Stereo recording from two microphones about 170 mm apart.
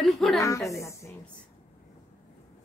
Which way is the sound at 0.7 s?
15° left (ahead or behind).